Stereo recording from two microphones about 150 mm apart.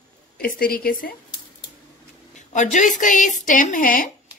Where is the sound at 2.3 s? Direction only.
55° left (ahead or behind).